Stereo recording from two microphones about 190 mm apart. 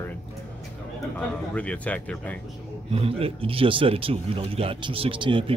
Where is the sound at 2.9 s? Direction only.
30° right (ahead or behind).